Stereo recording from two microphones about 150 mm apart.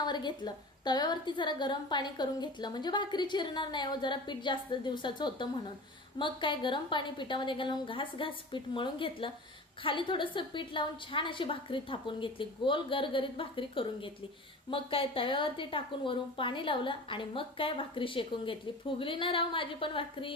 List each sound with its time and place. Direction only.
0.0 s a woman's voice: 30° left (ahead or behind)